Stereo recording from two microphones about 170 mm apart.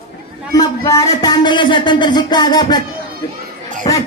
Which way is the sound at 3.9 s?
25° left (ahead or behind).